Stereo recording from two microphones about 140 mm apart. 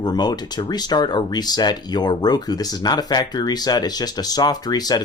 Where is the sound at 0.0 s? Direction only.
30° left (ahead or behind).